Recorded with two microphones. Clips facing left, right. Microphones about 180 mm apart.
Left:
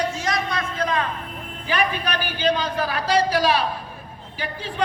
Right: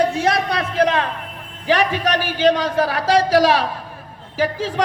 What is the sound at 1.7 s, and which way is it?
A man's voice, 85° right.